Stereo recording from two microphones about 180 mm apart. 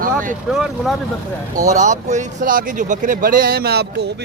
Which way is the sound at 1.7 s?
40° right (ahead or behind).